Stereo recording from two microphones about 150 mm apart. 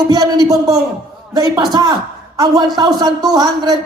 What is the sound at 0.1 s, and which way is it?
A woman's voice, 25° right (ahead or behind).